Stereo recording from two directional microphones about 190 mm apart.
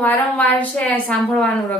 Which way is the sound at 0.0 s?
10° left (ahead or behind).